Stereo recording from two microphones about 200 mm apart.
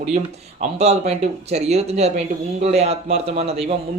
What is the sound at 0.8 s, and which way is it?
A man's voice, 30° right (ahead or behind).